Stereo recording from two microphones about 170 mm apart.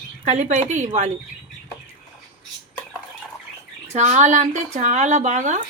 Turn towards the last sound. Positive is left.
turn(degrees=-45)  # may be behind; listen again after turning